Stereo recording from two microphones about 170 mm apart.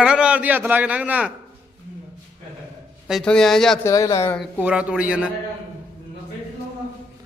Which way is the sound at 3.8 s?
20° left (ahead or behind).